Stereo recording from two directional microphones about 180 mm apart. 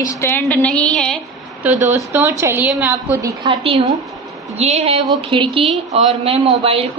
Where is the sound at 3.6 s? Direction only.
35° right (ahead or behind).